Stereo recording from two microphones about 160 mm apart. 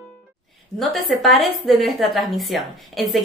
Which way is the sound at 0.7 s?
Centre (ahead or behind).